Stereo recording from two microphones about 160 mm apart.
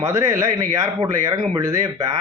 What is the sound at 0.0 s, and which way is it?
Speech, 20° right (ahead or behind).